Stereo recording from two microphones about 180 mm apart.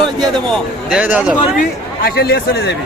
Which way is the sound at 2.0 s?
60° left (ahead or behind).